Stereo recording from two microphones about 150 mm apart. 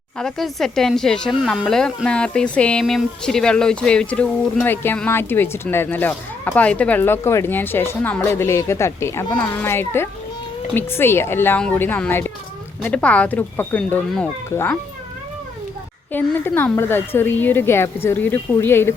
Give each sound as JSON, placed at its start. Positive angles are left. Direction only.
{"t": 0.2, "sound": "speech", "side_deg": 0}
{"t": 16.1, "sound": "speech", "side_deg": 15}